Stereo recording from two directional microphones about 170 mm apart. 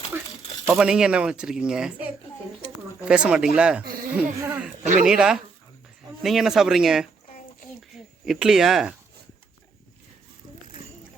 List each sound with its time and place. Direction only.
0.7 s speech: 5° right (ahead or behind)
4.8 s speech: 45° right (ahead or behind)
5.0 s speech: 5° right (ahead or behind)